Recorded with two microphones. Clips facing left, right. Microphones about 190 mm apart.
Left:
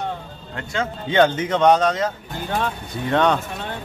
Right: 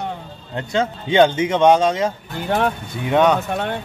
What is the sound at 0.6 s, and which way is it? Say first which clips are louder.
Speech: right 5 dB; 20° right (ahead or behind).